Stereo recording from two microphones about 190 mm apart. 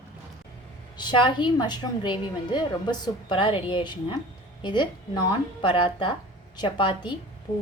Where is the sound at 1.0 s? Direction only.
25° left (ahead or behind).